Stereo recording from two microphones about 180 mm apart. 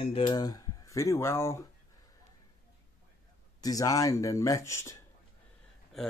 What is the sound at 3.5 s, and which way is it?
Speech, 20° left (ahead or behind).